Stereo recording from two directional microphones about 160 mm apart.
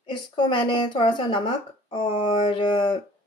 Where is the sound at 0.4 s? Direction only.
30° left (ahead or behind).